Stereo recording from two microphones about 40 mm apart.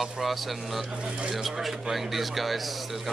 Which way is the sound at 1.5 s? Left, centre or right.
Centre.